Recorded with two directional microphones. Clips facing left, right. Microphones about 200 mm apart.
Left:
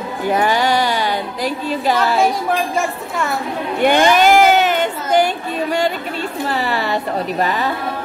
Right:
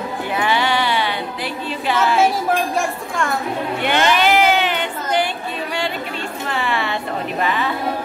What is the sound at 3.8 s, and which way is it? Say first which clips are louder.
A woman's voice: left 6 dB; 45° left (ahead or behind).